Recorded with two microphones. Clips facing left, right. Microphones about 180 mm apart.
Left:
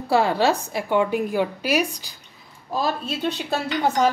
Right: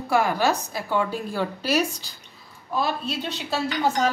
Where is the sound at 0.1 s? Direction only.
30° left (ahead or behind); by 2.0 s 15° left (ahead or behind).